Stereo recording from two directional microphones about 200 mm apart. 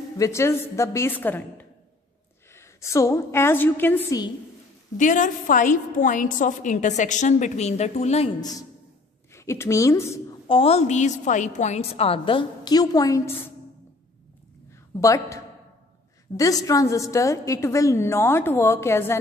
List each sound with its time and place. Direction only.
0.2 s a woman's voice: 15° left (ahead or behind)
4.9 s a woman's voice: 40° left (ahead or behind)
8.4 s a woman's voice: 20° left (ahead or behind)
10.5 s a woman's voice: 30° left (ahead or behind)
15.0 s a woman's voice: 15° left (ahead or behind)